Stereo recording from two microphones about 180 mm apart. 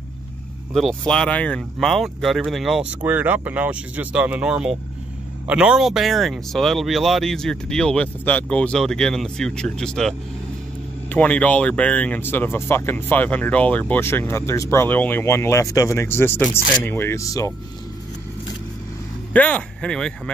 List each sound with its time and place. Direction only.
0.7 s speech: 5° left (ahead or behind)
19.3 s speech: 5° left (ahead or behind)